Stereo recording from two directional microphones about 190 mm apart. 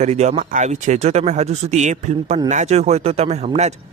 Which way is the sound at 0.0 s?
35° right (ahead or behind).